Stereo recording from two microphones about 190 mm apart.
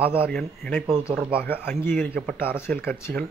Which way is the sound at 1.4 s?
10° left (ahead or behind).